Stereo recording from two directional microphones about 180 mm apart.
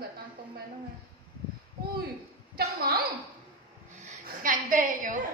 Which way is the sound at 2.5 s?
60° right (ahead or behind).